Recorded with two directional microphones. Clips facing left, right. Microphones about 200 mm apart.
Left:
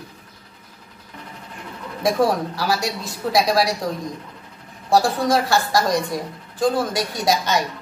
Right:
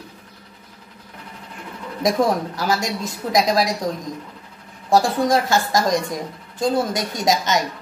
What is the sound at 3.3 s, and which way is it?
Speech, 20° right (ahead or behind).